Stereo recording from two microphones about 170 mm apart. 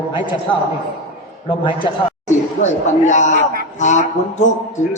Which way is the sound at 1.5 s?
30° left (ahead or behind).